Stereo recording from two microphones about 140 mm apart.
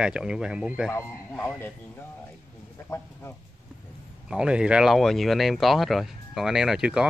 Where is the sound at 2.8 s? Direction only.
20° left (ahead or behind).